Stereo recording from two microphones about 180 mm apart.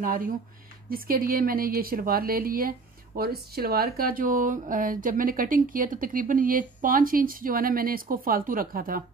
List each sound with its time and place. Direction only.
0.8 s a woman's voice: 55° right (ahead or behind)